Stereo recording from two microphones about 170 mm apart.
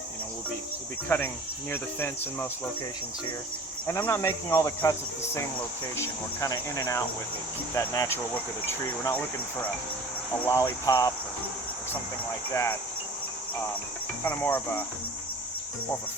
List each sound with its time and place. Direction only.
1.0 s speech: 10° left (ahead or behind)
3.8 s speech: 15° left (ahead or behind)
14.3 s speech: 10° left (ahead or behind)